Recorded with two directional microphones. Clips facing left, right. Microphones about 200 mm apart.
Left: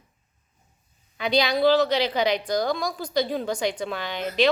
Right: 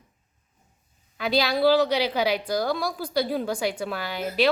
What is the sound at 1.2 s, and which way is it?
A woman's voice, 5° right (ahead or behind).